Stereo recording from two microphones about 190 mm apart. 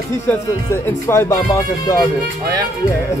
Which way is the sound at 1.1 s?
15° left (ahead or behind).